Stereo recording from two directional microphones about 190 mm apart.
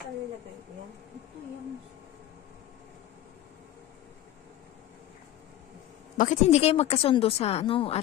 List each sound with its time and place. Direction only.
6.1 s speech: 40° left (ahead or behind)